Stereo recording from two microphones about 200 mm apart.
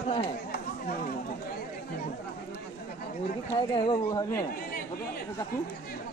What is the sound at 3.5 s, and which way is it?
Speech, 25° left (ahead or behind).